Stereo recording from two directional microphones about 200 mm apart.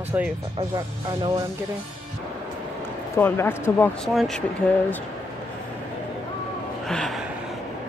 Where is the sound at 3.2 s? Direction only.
10° left (ahead or behind).